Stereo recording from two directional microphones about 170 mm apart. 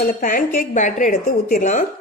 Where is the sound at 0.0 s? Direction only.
60° left (ahead or behind).